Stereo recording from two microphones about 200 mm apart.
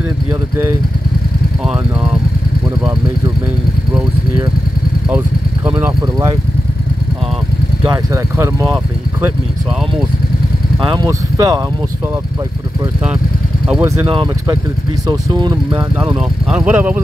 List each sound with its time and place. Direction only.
0.3 s speech: 10° right (ahead or behind)
5.8 s speech: 15° right (ahead or behind)
7.8 s speech: 15° right (ahead or behind)
10.9 s speech: 20° right (ahead or behind)
13.8 s speech: 25° right (ahead or behind)
16.2 s speech: 5° right (ahead or behind)